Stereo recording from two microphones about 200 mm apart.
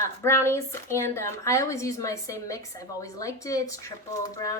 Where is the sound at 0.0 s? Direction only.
10° left (ahead or behind).